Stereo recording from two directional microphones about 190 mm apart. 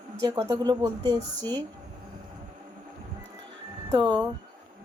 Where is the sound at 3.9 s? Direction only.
25° right (ahead or behind).